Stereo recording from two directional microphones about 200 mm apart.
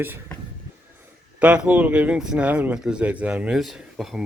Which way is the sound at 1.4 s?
5° right (ahead or behind).